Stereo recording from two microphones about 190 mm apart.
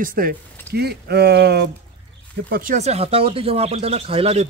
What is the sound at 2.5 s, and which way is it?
Speech, 45° right (ahead or behind).